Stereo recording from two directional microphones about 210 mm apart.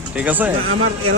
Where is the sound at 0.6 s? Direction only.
90° right.